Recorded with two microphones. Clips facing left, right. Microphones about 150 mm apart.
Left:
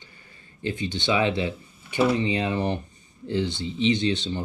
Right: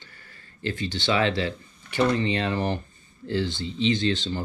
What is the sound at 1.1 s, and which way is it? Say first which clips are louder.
Speech: even; 10° left (ahead or behind).